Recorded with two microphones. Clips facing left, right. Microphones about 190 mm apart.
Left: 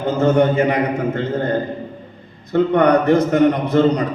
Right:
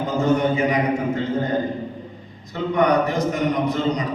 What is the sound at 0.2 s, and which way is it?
A man's voice, 60° left (ahead or behind).